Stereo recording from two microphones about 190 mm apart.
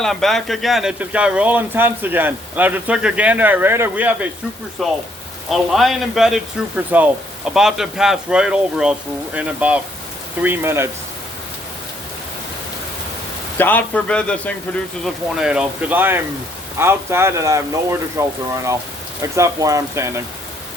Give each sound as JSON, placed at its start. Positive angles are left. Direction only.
{"t": 0.0, "sound": "speech", "side_deg": 0}
{"t": 13.6, "sound": "a man's voice", "side_deg": 10}